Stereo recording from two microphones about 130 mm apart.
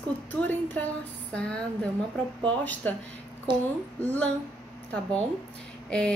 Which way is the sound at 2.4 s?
10° left (ahead or behind).